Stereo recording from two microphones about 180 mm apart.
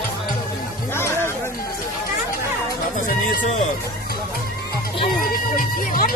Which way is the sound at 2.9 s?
50° left (ahead or behind).